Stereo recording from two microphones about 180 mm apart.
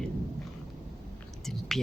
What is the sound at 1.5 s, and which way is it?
Speech, centre (ahead or behind).